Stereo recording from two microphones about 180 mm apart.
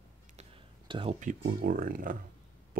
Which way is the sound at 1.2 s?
45° right (ahead or behind).